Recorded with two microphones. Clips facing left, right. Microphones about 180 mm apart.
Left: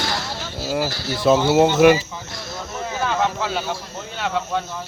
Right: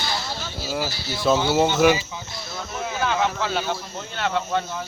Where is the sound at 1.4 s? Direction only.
5° left (ahead or behind).